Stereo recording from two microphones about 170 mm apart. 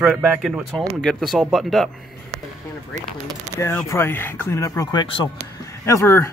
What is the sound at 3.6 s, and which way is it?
Speech, 15° left (ahead or behind).